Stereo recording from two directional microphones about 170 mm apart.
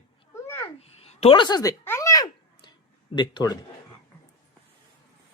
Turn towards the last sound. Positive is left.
turn(degrees=25)  # may be behind; listen again after turning